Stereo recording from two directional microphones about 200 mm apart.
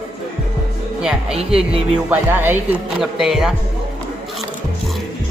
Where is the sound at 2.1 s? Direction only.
10° right (ahead or behind).